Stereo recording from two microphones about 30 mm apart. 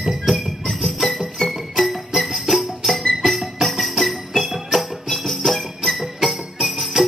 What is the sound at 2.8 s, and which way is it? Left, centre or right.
Music, centre.